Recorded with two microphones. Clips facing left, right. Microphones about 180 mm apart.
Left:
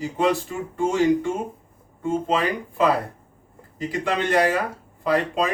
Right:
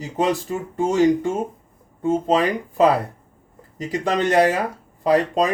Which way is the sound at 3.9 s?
40° right (ahead or behind).